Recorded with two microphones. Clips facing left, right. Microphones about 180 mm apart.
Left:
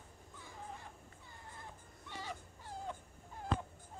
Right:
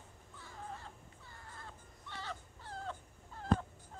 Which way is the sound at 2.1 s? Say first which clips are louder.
Even; 10° left (ahead or behind).